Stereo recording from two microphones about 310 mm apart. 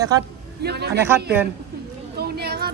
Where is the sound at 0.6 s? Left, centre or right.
Right.